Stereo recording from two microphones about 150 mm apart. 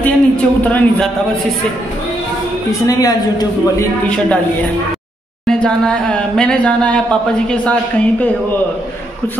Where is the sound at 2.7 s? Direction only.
25° left (ahead or behind).